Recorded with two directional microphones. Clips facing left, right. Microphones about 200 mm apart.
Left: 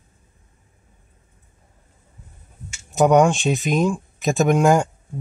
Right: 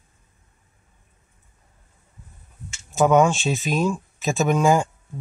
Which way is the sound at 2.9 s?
15° left (ahead or behind).